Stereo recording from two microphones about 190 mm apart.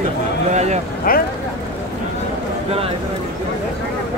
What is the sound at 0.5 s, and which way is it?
Speech, 35° right (ahead or behind).